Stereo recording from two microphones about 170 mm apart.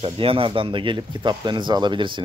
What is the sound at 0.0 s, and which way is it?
Speech, 35° right (ahead or behind).